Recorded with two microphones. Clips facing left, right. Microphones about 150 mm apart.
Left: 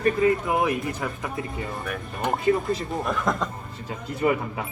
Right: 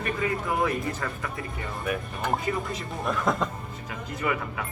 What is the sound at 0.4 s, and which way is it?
Speech, 20° left (ahead or behind).